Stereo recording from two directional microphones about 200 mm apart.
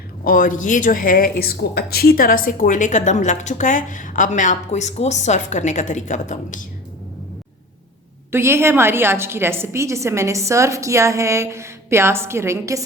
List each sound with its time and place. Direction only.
0.3 s a woman's voice: 40° left (ahead or behind)
8.3 s a woman's voice: 10° right (ahead or behind)